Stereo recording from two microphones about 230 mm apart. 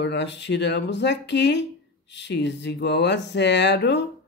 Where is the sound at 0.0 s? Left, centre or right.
Left.